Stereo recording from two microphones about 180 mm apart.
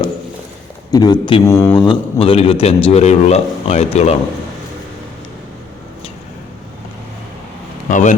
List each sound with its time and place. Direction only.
0.9 s a man's voice: 20° left (ahead or behind)
7.9 s speech: 45° left (ahead or behind)